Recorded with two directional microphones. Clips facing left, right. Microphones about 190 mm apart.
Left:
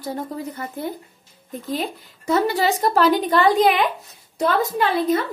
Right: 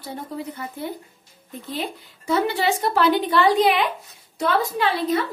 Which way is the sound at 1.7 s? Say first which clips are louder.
Left 2 dB; 40° left (ahead or behind).